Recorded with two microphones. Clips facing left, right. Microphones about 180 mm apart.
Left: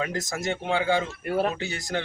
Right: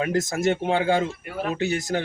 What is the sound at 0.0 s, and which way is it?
Speech, 50° right (ahead or behind).